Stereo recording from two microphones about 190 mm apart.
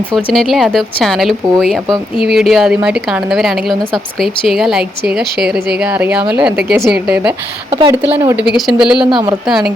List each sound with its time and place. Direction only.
0.3 s a woman's voice: centre (ahead or behind)
7.7 s speech: 20° right (ahead or behind)
8.4 s a woman's voice: 5° right (ahead or behind)
9.0 s speech: 25° right (ahead or behind)
9.5 s a woman's voice: centre (ahead or behind)